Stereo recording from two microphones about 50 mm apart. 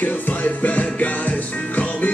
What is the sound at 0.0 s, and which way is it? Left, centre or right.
Music, left.